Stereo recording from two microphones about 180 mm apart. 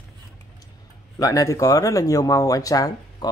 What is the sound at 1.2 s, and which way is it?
Speech, 20° left (ahead or behind).